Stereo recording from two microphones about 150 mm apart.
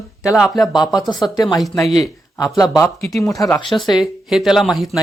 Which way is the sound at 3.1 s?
20° left (ahead or behind).